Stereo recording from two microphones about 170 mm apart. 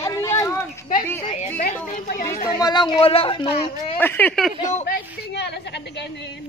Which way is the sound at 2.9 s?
35° left (ahead or behind).